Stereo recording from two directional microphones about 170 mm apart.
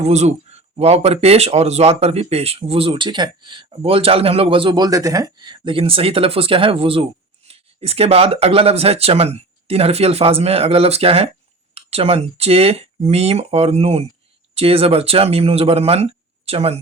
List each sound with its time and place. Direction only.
0.0 s speech: 40° right (ahead or behind)